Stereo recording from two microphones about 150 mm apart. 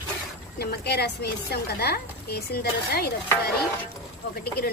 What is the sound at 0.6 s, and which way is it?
Speech, 90° left.